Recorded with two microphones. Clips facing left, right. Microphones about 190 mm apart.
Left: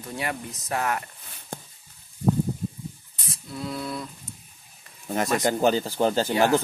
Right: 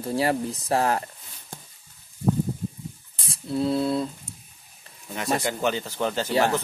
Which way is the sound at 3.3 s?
30° right (ahead or behind).